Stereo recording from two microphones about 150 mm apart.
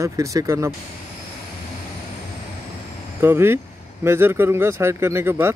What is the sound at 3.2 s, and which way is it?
Speech, 15° right (ahead or behind).